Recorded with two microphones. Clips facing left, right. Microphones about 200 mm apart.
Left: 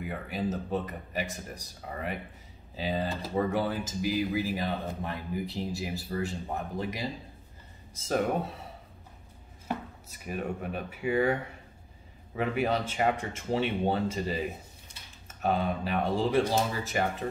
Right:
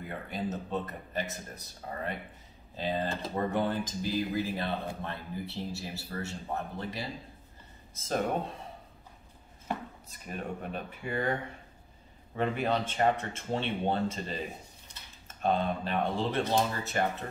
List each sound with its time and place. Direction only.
0.0 s speech: 10° left (ahead or behind)
8.1 s speech: 5° left (ahead or behind)
9.7 s speech: 5° left (ahead or behind)
12.4 s speech: 10° left (ahead or behind)